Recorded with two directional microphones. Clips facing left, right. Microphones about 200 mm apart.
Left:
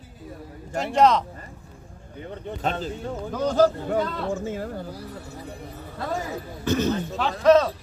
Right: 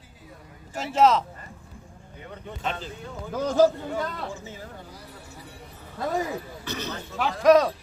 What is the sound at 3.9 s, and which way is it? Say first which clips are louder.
Speech: left 6 dB; 55° left (ahead or behind).